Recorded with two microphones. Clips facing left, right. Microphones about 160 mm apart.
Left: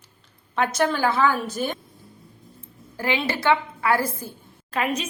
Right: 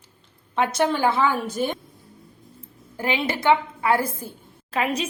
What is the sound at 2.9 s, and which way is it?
A woman's voice, 20° right (ahead or behind).